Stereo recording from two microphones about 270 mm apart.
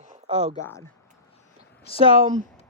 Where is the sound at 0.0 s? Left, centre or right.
Right.